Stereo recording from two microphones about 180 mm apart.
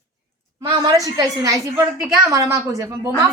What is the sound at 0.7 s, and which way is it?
A woman's voice, 20° right (ahead or behind).